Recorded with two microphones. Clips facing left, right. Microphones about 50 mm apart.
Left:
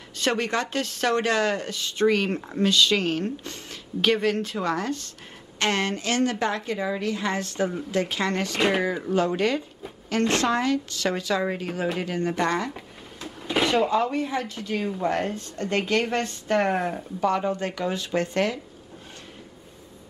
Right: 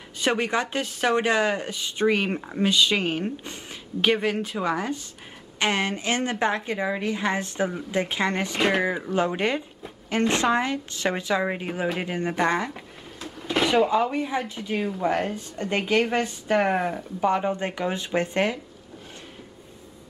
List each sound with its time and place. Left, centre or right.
0.2 s a woman's voice: centre
8.5 s speech: centre
8.8 s a woman's voice: centre
12.7 s a sound: centre
13.7 s speech: centre
14.9 s speech: centre
17.2 s a woman's voice: centre